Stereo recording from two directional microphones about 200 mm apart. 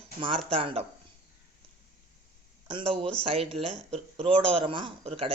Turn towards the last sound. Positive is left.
turn(degrees=-30)  # may be behind; listen again after turning